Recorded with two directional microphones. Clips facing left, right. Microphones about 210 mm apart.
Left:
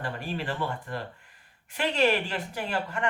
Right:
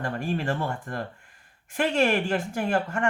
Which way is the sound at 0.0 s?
45° right (ahead or behind).